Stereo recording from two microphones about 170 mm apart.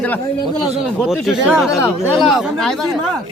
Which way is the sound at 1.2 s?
Centre (ahead or behind).